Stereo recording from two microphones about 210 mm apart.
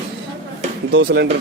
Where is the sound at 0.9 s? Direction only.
55° right (ahead or behind).